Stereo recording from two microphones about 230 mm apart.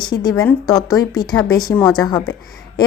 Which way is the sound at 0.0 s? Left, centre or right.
Centre.